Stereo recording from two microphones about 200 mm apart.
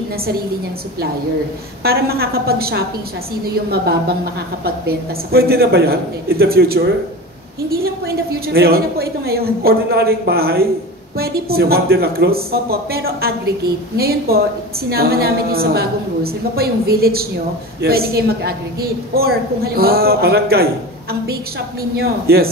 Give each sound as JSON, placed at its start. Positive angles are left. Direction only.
{"t": 1.8, "sound": "a woman's voice", "side_deg": -50}